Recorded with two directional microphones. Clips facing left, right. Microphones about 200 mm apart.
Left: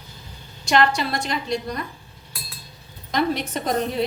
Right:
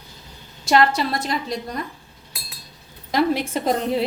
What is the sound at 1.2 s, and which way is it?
Speech, 40° right (ahead or behind).